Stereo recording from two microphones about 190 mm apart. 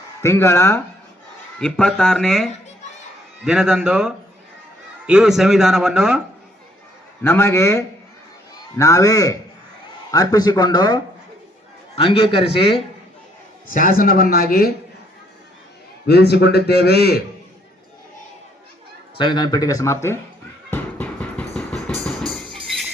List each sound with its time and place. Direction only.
0.2 s a man's voice: 15° left (ahead or behind); by 6.2 s 5° right (ahead or behind)
7.2 s a man's voice: 10° left (ahead or behind); by 12.8 s 30° left (ahead or behind)
13.9 s speech: 50° left (ahead or behind)
16.0 s a man's voice: 60° left (ahead or behind)
19.1 s speech: 25° left (ahead or behind)
20.7 s music: 10° left (ahead or behind)